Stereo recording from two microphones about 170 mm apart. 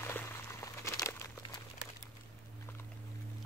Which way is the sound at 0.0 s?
15° left (ahead or behind).